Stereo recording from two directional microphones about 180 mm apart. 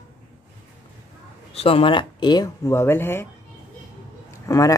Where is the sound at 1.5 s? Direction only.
30° left (ahead or behind); by 3.3 s 15° left (ahead or behind).